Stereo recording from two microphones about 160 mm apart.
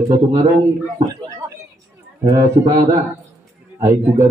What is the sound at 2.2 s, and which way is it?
Speech, 20° right (ahead or behind).